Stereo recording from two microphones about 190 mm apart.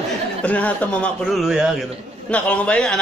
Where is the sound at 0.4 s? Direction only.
5° left (ahead or behind).